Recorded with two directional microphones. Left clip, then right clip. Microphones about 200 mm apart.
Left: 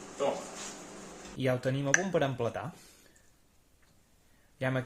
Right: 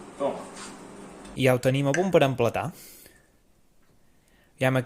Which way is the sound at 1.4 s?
40° right (ahead or behind).